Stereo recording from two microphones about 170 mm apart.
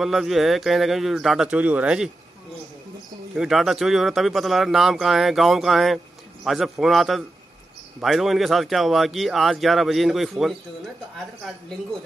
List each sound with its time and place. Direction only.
0.0 s speech: centre (ahead or behind)
3.3 s speech: centre (ahead or behind)